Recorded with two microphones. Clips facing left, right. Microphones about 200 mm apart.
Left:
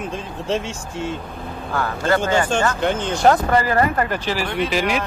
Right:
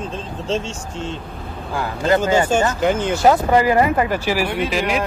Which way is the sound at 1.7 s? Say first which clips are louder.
Right 2 dB; 20° right (ahead or behind).